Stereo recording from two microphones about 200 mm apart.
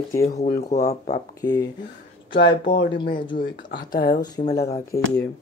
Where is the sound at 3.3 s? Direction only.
45° left (ahead or behind).